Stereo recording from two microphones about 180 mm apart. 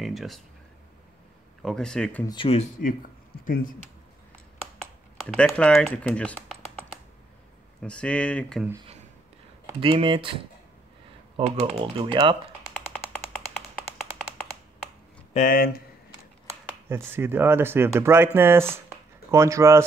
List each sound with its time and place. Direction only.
0.0 s speech: centre (ahead or behind)
1.6 s speech: centre (ahead or behind)
2.2 s speech: 30° left (ahead or behind); by 3.7 s 50° left (ahead or behind)
4.7 s speech: 5° left (ahead or behind)
7.8 s speech: 5° left (ahead or behind)
9.8 s speech: 30° right (ahead or behind)
11.3 s speech: 30° right (ahead or behind)
15.3 s speech: 50° left (ahead or behind)
16.9 s speech: 10° right (ahead or behind)